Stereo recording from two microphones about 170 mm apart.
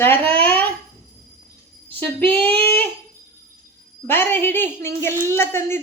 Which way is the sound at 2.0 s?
10° left (ahead or behind).